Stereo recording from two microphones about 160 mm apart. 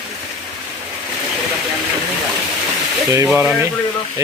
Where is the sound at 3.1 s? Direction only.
10° right (ahead or behind).